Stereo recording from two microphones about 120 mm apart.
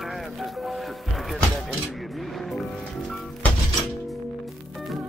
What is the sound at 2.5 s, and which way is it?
Music, centre (ahead or behind).